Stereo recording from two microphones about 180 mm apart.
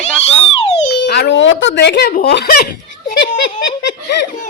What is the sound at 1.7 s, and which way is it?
Speech, 65° left (ahead or behind).